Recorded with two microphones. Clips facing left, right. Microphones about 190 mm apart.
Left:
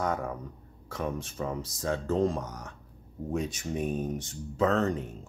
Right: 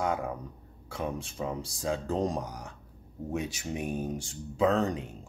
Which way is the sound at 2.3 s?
35° right (ahead or behind).